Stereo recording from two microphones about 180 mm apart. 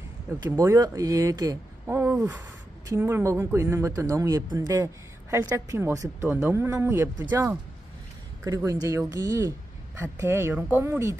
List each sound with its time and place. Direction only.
0.4 s speech: 15° right (ahead or behind)